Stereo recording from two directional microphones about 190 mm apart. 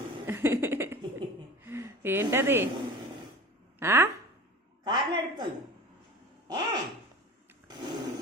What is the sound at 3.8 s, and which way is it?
Speech, 15° right (ahead or behind).